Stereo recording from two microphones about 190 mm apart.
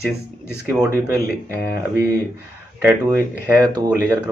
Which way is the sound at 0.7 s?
15° right (ahead or behind).